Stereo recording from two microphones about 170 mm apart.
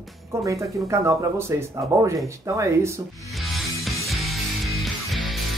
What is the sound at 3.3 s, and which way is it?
Music, centre (ahead or behind).